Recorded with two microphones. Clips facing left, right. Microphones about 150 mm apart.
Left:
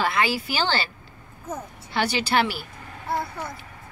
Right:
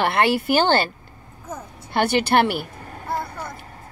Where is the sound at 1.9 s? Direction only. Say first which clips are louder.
Right 5 dB; 55° right (ahead or behind).